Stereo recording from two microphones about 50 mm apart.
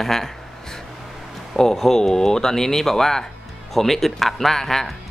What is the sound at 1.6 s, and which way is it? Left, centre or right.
Speech, centre.